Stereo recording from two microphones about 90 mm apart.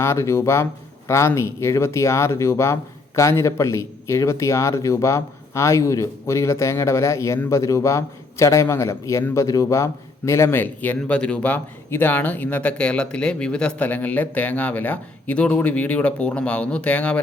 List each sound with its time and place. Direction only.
0.0 s a man's voice: 30° left (ahead or behind)